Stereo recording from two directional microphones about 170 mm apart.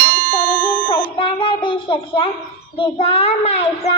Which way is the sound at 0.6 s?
30° left (ahead or behind).